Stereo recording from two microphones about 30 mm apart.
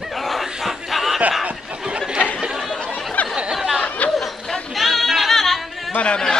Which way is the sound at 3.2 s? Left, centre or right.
Left.